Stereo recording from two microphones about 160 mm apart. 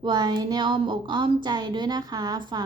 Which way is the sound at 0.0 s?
30° right (ahead or behind).